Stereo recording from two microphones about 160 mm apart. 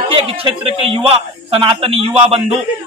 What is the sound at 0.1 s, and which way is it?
A man's voice, 35° right (ahead or behind).